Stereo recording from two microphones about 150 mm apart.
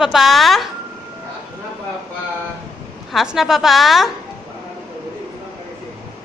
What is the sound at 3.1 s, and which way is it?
A woman's voice, centre (ahead or behind).